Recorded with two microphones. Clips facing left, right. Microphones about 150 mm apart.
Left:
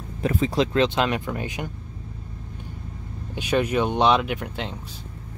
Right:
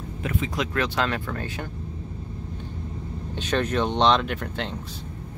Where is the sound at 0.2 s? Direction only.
35° left (ahead or behind).